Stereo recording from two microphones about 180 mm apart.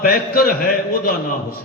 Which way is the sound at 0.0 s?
55° left (ahead or behind).